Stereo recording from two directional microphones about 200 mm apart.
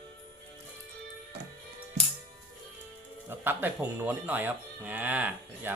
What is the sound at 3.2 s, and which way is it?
Speech, 10° right (ahead or behind).